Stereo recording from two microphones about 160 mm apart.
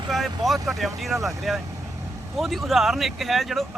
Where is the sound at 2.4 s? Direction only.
Centre (ahead or behind).